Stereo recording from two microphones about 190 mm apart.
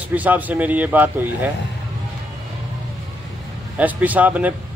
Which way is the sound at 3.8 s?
10° right (ahead or behind).